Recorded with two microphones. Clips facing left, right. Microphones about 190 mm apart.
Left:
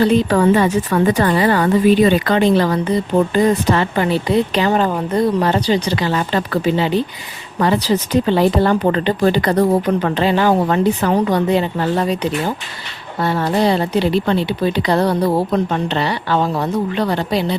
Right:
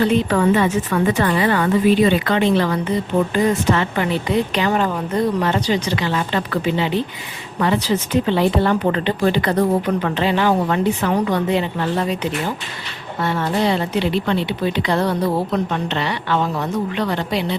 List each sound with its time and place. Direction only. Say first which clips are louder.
0.0 s speech: left 3 dB; 35° left (ahead or behind)